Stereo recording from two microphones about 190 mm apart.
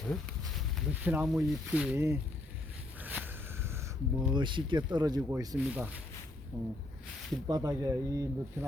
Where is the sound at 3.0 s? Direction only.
10° right (ahead or behind).